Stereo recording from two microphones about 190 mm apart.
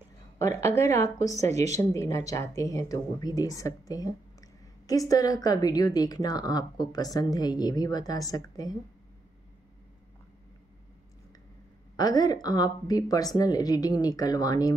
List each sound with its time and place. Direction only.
0.4 s speech: 15° left (ahead or behind)
1.5 s speech: 35° right (ahead or behind)
1.8 s a woman's voice: 15° left (ahead or behind)
12.0 s a woman's voice: 20° left (ahead or behind)